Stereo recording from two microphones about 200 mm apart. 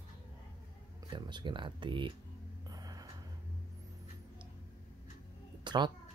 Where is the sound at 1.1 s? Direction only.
20° right (ahead or behind).